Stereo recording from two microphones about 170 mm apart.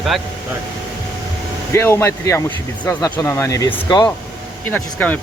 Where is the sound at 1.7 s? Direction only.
15° left (ahead or behind).